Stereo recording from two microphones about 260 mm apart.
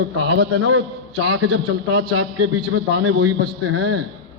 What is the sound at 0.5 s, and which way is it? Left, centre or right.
Speech, right.